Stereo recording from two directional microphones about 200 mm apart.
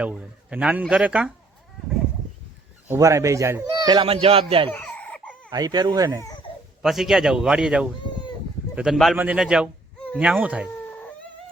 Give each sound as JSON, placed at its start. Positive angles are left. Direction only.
{"t": 0.0, "sound": "a man's voice", "side_deg": -5}
{"t": 2.8, "sound": "a man's voice", "side_deg": -15}
{"t": 4.7, "sound": "crying", "side_deg": 5}
{"t": 5.5, "sound": "a man's voice", "side_deg": -20}
{"t": 6.8, "sound": "a man's voice", "side_deg": 0}